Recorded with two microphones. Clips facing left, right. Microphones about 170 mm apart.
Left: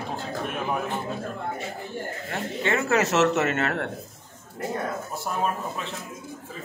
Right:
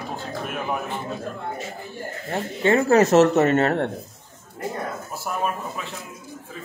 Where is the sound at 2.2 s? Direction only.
35° right (ahead or behind).